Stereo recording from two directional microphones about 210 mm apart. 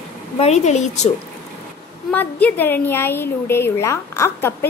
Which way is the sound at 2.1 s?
5° left (ahead or behind).